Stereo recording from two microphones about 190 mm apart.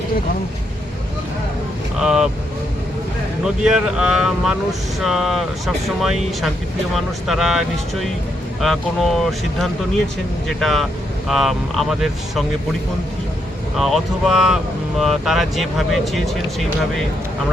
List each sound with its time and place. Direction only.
2.0 s speech: 5° right (ahead or behind)
3.4 s speech: 5° right (ahead or behind)
13.7 s speech: centre (ahead or behind)